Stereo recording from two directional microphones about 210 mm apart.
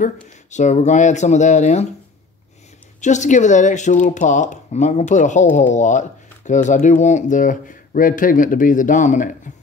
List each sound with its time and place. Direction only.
0.0 s speech: 35° left (ahead or behind)
3.0 s speech: 35° left (ahead or behind)